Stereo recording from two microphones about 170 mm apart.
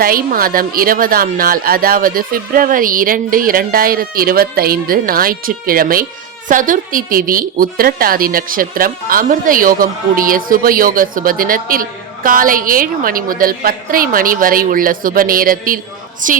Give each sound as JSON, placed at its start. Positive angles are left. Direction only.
{"t": 0.0, "sound": "a woman's voice", "side_deg": -60}